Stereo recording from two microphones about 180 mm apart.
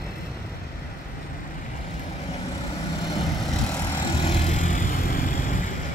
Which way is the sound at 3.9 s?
30° left (ahead or behind).